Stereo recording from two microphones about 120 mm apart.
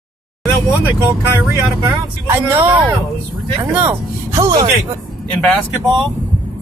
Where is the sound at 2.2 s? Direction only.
20° right (ahead or behind).